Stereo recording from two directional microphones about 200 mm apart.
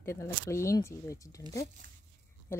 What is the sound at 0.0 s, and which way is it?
Speech, 15° left (ahead or behind).